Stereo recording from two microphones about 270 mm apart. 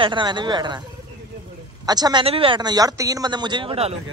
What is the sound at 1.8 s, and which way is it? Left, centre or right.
A man's voice, centre.